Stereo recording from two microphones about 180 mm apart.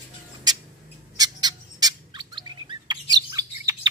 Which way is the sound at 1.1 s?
20° right (ahead or behind).